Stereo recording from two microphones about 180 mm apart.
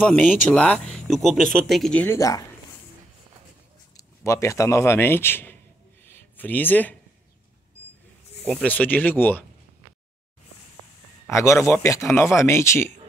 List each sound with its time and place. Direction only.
0.0 s a man's voice: 5° left (ahead or behind)
3.9 s a man's voice: 15° left (ahead or behind)
6.0 s a sound: 10° left (ahead or behind)
8.5 s a man's voice: 5° left (ahead or behind)
11.2 s a man's voice: 15° left (ahead or behind)